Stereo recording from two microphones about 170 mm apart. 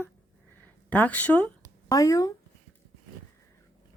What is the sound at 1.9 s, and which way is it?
Speech, 20° left (ahead or behind).